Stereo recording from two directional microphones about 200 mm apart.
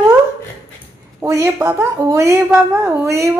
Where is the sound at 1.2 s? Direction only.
15° right (ahead or behind).